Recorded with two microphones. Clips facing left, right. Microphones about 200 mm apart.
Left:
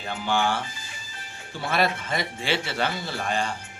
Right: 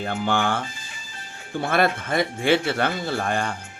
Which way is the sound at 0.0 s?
55° right (ahead or behind).